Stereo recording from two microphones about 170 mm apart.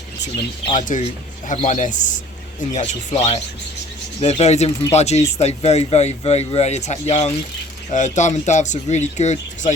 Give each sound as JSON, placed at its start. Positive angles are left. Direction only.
{"t": 0.7, "sound": "speech", "side_deg": 50}